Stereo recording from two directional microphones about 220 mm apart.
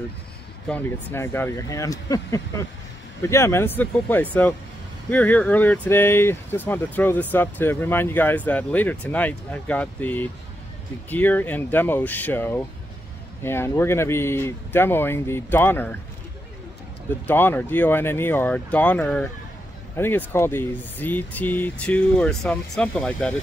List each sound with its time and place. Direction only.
0.7 s speech: 10° left (ahead or behind)
17.3 s speech: 10° left (ahead or behind)